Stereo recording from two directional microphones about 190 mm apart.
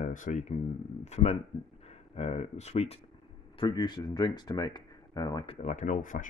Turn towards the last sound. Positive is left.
turn(degrees=45)  # may be behind; listen again after turning